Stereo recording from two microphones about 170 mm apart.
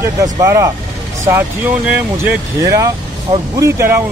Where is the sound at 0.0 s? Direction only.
20° right (ahead or behind).